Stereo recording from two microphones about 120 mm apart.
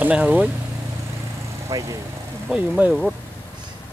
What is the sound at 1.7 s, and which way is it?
Speech, 30° right (ahead or behind).